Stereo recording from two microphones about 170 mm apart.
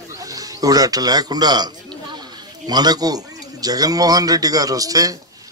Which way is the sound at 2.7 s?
25° right (ahead or behind).